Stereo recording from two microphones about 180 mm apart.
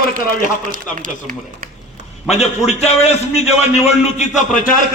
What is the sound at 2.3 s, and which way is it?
A man's voice, 35° left (ahead or behind).